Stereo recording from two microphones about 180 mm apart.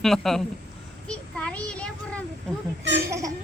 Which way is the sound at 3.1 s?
15° right (ahead or behind).